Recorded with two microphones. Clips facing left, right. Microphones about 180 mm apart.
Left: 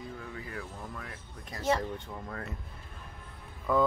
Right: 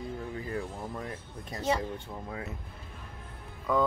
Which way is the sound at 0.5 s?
30° right (ahead or behind).